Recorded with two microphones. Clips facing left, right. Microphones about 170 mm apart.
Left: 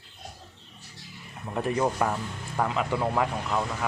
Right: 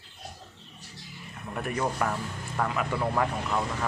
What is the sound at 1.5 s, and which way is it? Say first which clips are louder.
Speech: left 4 dB; 25° left (ahead or behind).